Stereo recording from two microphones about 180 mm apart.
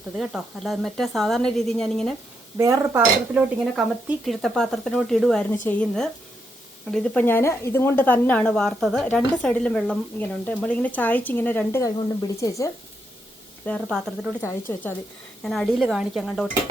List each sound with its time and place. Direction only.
0.2 s speech: centre (ahead or behind)
2.6 s speech: 15° right (ahead or behind)
3.3 s a woman's voice: 5° right (ahead or behind); by 12.7 s 15° left (ahead or behind)
13.7 s a woman's voice: 5° left (ahead or behind)